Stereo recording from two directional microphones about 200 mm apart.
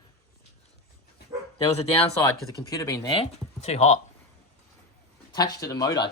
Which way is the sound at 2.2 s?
20° left (ahead or behind).